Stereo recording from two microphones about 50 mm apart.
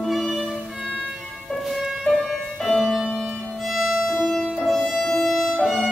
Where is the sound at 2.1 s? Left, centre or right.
Left.